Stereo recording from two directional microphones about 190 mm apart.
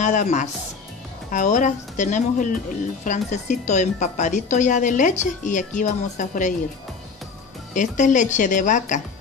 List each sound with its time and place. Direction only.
0.0 s speech: 40° left (ahead or behind)
7.7 s speech: 40° left (ahead or behind)